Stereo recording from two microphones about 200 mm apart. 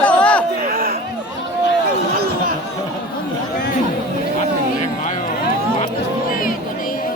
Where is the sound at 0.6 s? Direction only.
50° right (ahead or behind).